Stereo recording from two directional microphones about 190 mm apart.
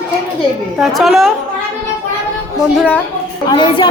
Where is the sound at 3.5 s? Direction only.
25° left (ahead or behind).